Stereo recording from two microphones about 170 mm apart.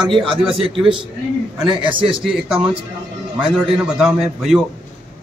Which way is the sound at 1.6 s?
30° right (ahead or behind).